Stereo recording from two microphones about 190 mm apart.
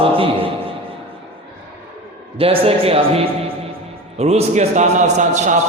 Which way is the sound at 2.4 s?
30° right (ahead or behind).